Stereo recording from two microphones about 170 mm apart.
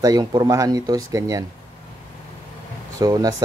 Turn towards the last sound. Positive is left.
turn(degrees=-20)  # may be behind; listen again after turning